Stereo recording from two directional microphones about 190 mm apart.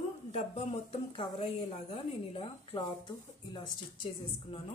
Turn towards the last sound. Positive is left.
turn(degrees=25)  # may be behind; listen again after turning